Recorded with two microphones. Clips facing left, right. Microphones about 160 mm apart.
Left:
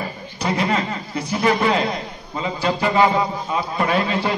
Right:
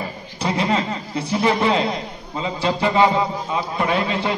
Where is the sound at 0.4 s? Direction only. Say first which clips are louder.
Even; 25° right (ahead or behind).